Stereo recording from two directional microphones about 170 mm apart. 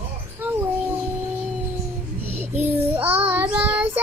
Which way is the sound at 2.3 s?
10° right (ahead or behind).